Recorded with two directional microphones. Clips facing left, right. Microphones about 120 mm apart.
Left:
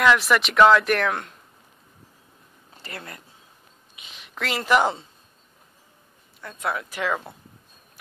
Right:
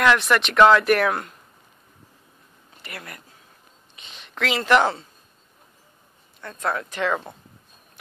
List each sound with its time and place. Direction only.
0.0 s speech: centre (ahead or behind)
2.8 s speech: 30° left (ahead or behind)
3.9 s a sound: 5° left (ahead or behind)
6.4 s speech: 10° left (ahead or behind)